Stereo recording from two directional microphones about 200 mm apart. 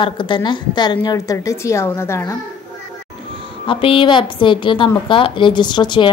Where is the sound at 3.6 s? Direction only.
25° left (ahead or behind).